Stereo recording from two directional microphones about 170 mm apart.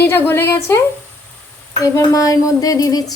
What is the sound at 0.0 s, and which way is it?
Speech, 15° left (ahead or behind).